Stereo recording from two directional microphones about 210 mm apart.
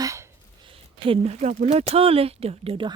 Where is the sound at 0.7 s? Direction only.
25° right (ahead or behind).